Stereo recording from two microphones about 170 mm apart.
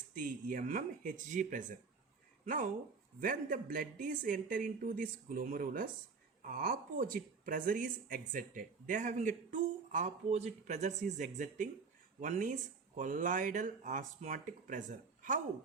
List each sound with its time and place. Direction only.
0.1 s speech: 50° right (ahead or behind)